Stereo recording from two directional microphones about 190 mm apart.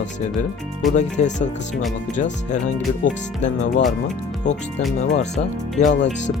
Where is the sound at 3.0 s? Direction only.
45° left (ahead or behind).